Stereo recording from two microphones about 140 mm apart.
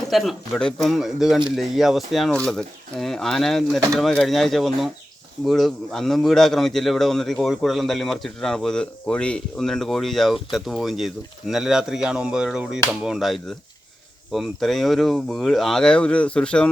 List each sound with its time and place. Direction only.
0.1 s a man's voice: centre (ahead or behind)